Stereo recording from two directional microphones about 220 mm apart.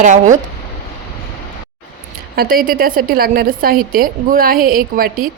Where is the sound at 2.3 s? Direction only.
45° right (ahead or behind).